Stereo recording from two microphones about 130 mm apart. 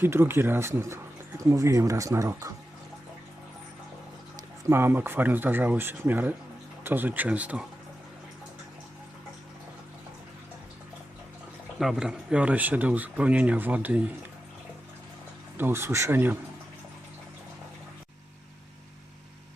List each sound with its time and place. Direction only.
0.0 s speech: 20° right (ahead or behind)
4.4 s speech: 20° right (ahead or behind)
11.8 s speech: 5° right (ahead or behind)
15.5 s speech: 20° right (ahead or behind)